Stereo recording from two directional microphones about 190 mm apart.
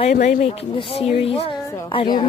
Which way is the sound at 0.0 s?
40° left (ahead or behind).